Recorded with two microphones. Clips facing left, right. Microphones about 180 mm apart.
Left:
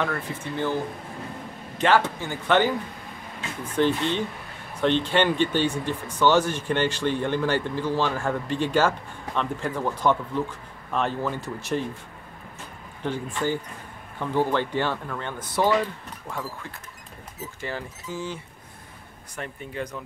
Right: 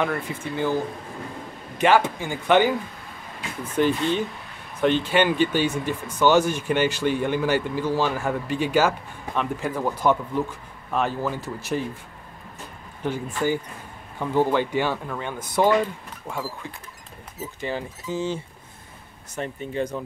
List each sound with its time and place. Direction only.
0.0 s speech: 10° right (ahead or behind)
1.8 s speech: 10° right (ahead or behind)
3.7 s speech: 10° right (ahead or behind)
13.0 s speech: 10° right (ahead or behind)
17.6 s speech: 20° right (ahead or behind)